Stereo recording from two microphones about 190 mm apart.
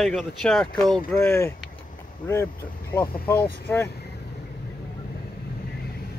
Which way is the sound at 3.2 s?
10° left (ahead or behind).